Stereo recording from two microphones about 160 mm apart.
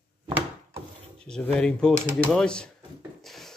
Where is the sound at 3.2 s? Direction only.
Centre (ahead or behind).